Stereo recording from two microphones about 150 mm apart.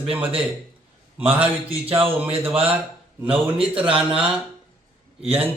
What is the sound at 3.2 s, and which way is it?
Mantra, 40° right (ahead or behind).